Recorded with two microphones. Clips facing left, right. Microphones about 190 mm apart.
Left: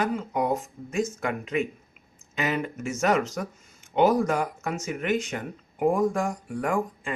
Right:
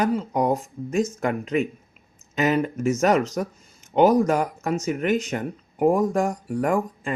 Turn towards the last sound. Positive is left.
turn(degrees=-40)  # may be behind; listen again after turning